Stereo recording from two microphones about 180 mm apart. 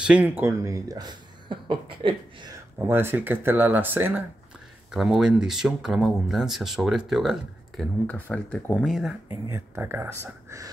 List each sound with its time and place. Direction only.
0.0 s speech: 5° right (ahead or behind); by 2.1 s 30° right (ahead or behind)
2.9 s speech: 10° right (ahead or behind)
9.3 s speech: 15° right (ahead or behind)